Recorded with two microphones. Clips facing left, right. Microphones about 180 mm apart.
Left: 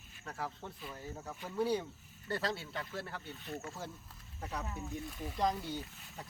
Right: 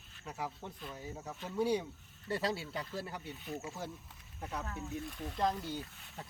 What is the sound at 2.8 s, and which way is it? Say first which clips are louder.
Speech: right 1 dB; 15° right (ahead or behind).